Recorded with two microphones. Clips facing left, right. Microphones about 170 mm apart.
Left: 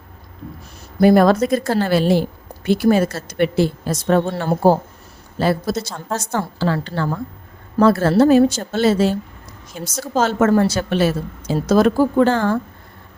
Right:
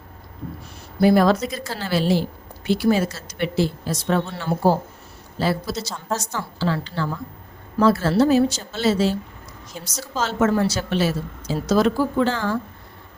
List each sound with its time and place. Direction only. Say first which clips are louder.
0.9 s a woman's voice: left 4 dB; 50° left (ahead or behind)